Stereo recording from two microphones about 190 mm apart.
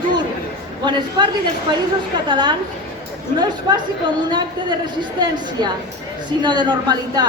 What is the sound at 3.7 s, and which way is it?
Speech, 25° right (ahead or behind).